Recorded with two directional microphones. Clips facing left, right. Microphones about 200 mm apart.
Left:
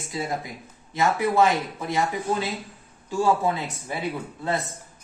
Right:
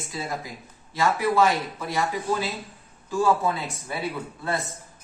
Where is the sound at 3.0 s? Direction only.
15° left (ahead or behind).